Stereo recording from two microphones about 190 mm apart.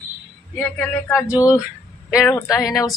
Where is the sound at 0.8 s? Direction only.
15° left (ahead or behind).